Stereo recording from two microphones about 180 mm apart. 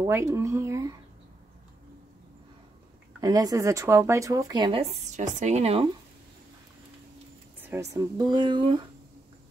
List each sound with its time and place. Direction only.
0.0 s speech: 15° right (ahead or behind)
3.2 s speech: 20° right (ahead or behind)
5.1 s speech: 40° right (ahead or behind)
7.6 s speech: 15° right (ahead or behind)